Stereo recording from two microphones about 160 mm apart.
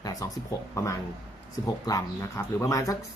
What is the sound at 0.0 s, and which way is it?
Speech, 20° left (ahead or behind).